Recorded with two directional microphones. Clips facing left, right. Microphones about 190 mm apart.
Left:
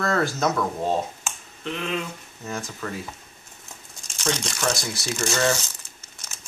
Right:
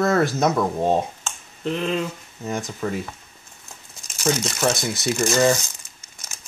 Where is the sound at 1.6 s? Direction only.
35° right (ahead or behind).